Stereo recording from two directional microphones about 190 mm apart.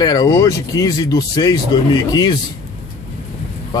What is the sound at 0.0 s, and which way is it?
A man's voice, 20° left (ahead or behind).